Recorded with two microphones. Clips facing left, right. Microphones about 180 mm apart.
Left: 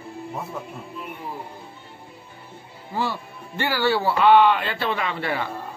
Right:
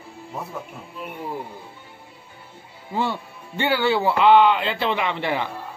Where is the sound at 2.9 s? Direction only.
20° right (ahead or behind).